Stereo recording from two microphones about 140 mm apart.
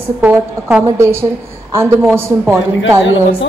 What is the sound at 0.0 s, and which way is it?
A woman's voice, 15° right (ahead or behind).